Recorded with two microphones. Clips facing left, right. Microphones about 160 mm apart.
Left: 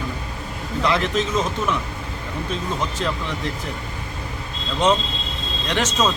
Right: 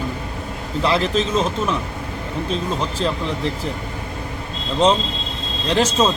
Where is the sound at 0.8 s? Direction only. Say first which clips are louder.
Right 2 dB; 30° right (ahead or behind).